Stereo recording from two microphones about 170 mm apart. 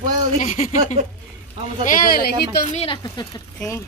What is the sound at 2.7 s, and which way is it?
Speech, 40° left (ahead or behind).